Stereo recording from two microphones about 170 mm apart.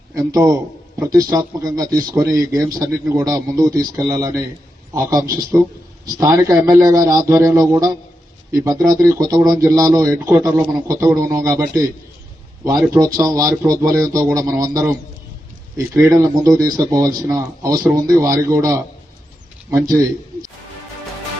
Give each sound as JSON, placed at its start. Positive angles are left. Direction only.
{"t": 0.1, "sound": "a man's voice", "side_deg": -20}
{"t": 12.9, "sound": "a man's voice", "side_deg": -20}